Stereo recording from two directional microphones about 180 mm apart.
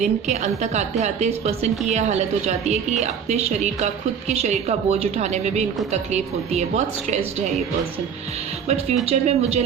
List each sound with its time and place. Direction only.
0.0 s a woman's voice: 40° right (ahead or behind)
8.6 s a woman's voice: 35° right (ahead or behind)